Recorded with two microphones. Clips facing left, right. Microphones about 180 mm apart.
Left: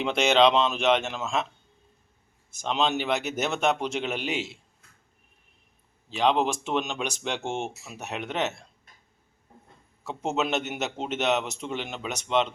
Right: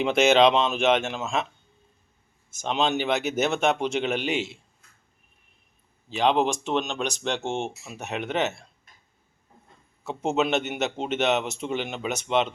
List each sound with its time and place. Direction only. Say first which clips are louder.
0.0 s speech: right 2 dB; 5° right (ahead or behind)
2.5 s speech: right 1 dB; centre (ahead or behind)
6.1 s speech: right 1 dB; centre (ahead or behind)
10.1 s speech: right 3 dB; centre (ahead or behind)